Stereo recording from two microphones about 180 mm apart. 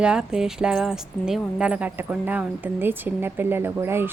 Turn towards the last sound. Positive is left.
turn(degrees=-15)  # may be behind; listen again after turning